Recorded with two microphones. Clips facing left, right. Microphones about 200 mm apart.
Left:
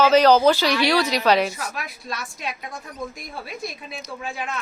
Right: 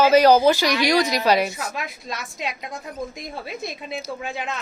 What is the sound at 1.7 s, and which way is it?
A woman's voice, 20° right (ahead or behind).